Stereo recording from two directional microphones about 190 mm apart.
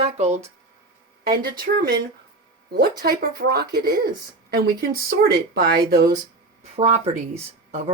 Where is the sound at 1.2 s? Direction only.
55° right (ahead or behind).